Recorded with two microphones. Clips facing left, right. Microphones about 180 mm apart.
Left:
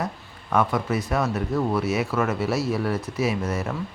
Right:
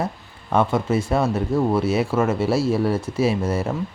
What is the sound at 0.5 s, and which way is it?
Speech, 25° right (ahead or behind).